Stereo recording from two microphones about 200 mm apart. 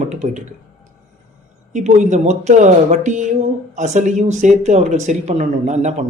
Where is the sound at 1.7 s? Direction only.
35° right (ahead or behind).